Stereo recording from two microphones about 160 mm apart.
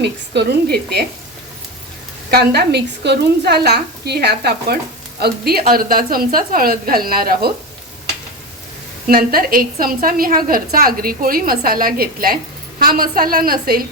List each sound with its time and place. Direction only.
0.0 s a woman's voice: 90° right
2.3 s a woman's voice: 85° right
5.2 s a woman's voice: 75° right (ahead or behind)
9.0 s a woman's voice: 65° right (ahead or behind)